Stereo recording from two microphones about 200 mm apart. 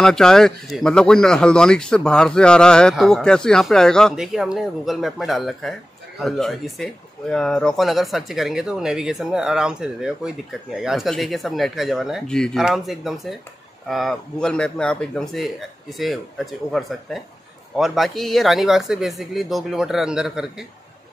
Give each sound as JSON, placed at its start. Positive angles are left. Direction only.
{"t": 0.0, "sound": "speech", "side_deg": 5}